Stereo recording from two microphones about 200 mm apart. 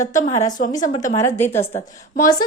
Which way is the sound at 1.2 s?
10° left (ahead or behind).